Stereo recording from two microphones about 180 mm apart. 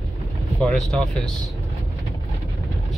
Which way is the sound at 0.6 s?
5° left (ahead or behind).